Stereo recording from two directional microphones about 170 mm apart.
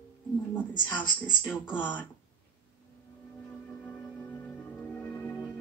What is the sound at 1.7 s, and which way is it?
Speech, 10° left (ahead or behind).